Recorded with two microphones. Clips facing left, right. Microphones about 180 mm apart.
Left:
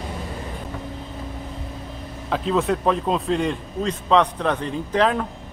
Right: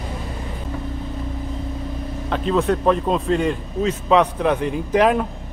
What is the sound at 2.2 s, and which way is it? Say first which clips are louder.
A man's voice: right 2 dB; centre (ahead or behind).